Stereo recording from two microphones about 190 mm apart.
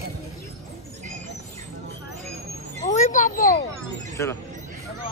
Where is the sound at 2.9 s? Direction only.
40° left (ahead or behind).